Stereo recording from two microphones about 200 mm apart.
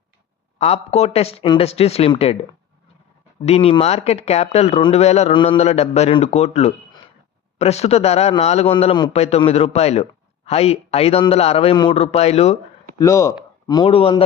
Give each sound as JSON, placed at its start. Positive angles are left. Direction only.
{"t": 0.6, "sound": "a man's voice", "side_deg": 30}
{"t": 3.4, "sound": "a man's voice", "side_deg": 30}
{"t": 13.0, "sound": "speech", "side_deg": 15}